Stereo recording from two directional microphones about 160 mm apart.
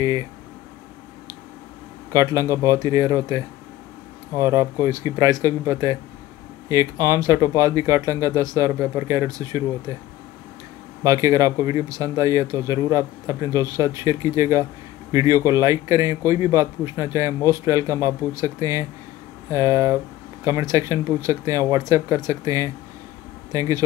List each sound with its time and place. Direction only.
0.0 s speech: 20° right (ahead or behind)
2.1 s speech: 20° right (ahead or behind)
11.1 s speech: 20° right (ahead or behind)